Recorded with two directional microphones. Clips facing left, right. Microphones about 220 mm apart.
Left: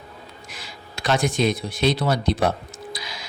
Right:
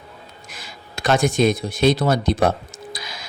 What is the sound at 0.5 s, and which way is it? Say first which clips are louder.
A man's voice: right 3 dB; 45° right (ahead or behind).